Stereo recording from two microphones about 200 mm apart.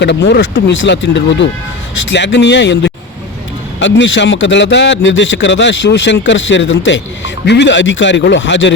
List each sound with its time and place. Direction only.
0.0 s a man's voice: 60° left (ahead or behind)